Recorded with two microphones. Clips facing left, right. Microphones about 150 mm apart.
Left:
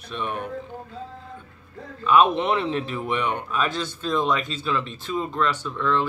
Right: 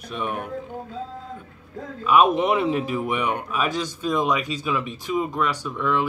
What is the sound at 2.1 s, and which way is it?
Speech, 10° right (ahead or behind).